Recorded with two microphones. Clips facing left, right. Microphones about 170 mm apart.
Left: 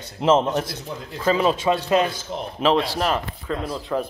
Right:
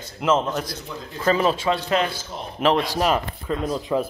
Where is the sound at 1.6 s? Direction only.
20° left (ahead or behind).